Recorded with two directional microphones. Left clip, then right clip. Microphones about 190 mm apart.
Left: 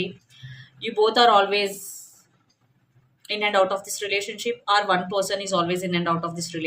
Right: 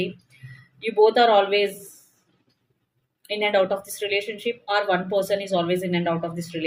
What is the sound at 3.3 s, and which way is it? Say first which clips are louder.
Speech: even; 25° left (ahead or behind).